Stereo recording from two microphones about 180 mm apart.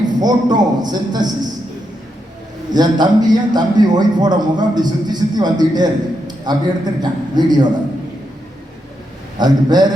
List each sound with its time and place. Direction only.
0.2 s a man's voice: 20° right (ahead or behind)
2.7 s a man's voice: 20° right (ahead or behind)
9.4 s a man's voice: 25° right (ahead or behind)